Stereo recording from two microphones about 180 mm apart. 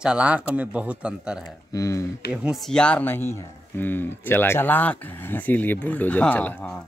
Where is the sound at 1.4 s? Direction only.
20° left (ahead or behind).